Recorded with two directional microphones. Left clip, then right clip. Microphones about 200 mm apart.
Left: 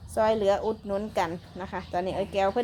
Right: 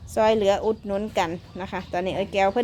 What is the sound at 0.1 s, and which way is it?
A woman's voice, 30° right (ahead or behind).